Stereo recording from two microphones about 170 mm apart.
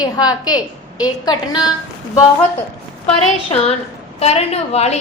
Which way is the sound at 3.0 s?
35° left (ahead or behind).